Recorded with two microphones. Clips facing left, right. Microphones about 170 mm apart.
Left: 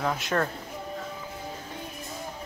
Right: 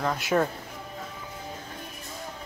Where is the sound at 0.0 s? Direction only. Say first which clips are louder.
Right 2 dB; centre (ahead or behind).